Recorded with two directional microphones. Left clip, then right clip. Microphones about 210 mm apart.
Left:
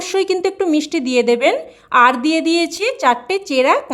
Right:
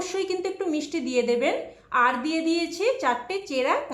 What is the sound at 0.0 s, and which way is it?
Speech, 50° left (ahead or behind).